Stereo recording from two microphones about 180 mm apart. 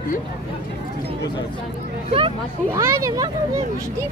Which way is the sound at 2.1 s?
30° right (ahead or behind).